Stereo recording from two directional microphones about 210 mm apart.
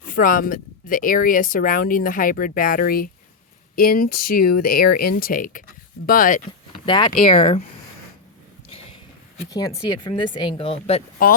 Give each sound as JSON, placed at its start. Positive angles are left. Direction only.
{"t": 0.0, "sound": "speech", "side_deg": 40}
{"t": 6.8, "sound": "speech", "side_deg": 20}
{"t": 7.1, "sound": "speech", "side_deg": 35}
{"t": 9.5, "sound": "speech", "side_deg": 20}